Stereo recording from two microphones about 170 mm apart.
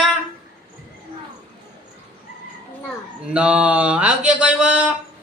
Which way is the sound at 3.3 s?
5° right (ahead or behind).